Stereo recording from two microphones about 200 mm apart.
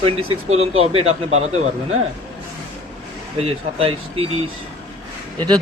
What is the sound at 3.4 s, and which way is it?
Speech, 30° right (ahead or behind).